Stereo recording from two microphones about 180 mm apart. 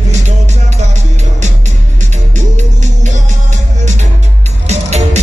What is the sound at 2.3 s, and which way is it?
Music, 45° right (ahead or behind).